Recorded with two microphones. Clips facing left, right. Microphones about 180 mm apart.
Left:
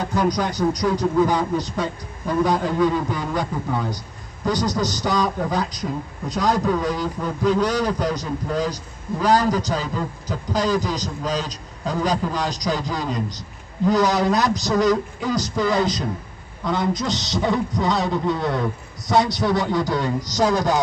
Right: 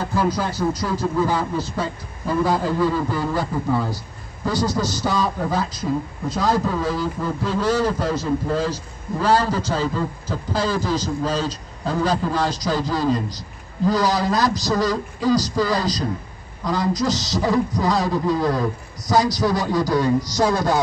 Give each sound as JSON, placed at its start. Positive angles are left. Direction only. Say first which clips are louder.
{"t": 0.2, "sound": "a man's voice", "louder": "left 1 dB", "side_deg": 15}
{"t": 4.5, "sound": "a man's voice", "louder": "even", "side_deg": 20}